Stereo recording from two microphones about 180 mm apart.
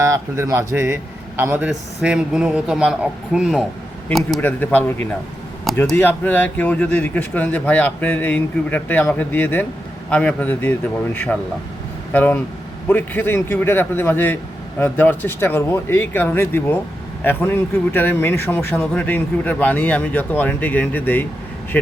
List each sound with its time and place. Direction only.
0.0 s a man's voice: 15° right (ahead or behind); by 21.2 s 10° left (ahead or behind)